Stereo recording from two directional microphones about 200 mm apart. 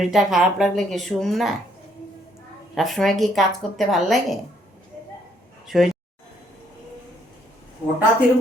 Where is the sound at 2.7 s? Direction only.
Centre (ahead or behind).